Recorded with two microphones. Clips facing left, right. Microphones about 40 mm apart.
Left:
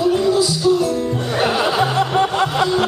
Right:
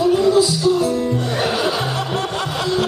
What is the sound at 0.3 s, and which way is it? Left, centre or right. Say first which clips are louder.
Music: right 1 dB; centre.